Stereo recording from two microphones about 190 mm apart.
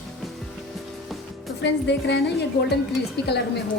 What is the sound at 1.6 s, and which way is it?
Speech, 65° left (ahead or behind).